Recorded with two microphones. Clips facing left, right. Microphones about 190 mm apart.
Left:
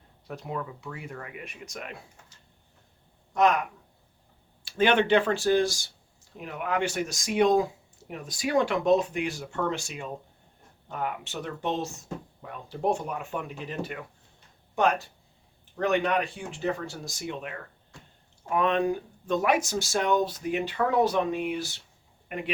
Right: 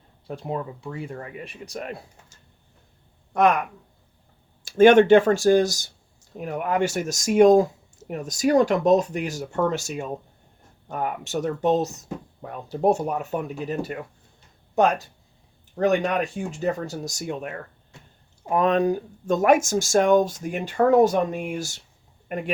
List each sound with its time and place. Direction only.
0.3 s speech: 30° right (ahead or behind)
3.3 s speech: 55° right (ahead or behind)
4.6 s speech: 45° right (ahead or behind)
15.7 s speech: 45° right (ahead or behind)